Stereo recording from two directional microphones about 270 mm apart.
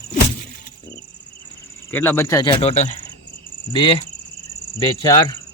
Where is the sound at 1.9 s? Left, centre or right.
Centre.